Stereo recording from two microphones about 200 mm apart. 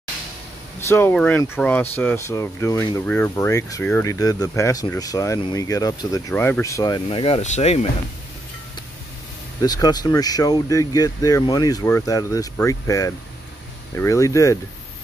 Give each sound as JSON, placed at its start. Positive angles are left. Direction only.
{"t": 0.7, "sound": "speech", "side_deg": 10}
{"t": 9.6, "sound": "speech", "side_deg": 20}